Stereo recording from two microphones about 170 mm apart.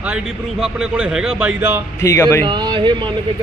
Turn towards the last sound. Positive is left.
turn(degrees=-25)  # may be behind; listen again after turning